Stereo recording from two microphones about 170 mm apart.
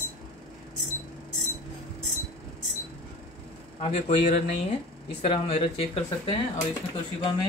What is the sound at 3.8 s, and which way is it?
Speech, 40° left (ahead or behind).